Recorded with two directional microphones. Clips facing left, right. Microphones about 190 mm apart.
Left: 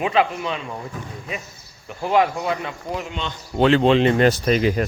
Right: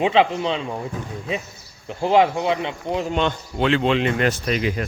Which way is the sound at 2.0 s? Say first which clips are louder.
Right 2 dB; 25° right (ahead or behind).